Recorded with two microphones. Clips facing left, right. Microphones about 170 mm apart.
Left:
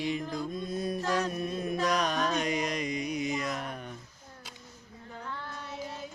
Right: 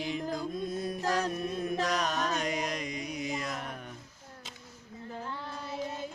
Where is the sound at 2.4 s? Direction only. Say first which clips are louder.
Left 2 dB; centre (ahead or behind).